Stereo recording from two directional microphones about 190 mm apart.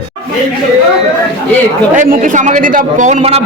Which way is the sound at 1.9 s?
45° right (ahead or behind).